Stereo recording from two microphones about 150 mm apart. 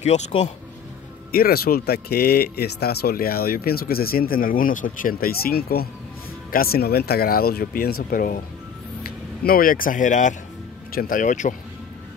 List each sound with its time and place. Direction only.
0.0 s speech: 45° left (ahead or behind)
1.3 s speech: 90° left; by 11.5 s 55° left (ahead or behind)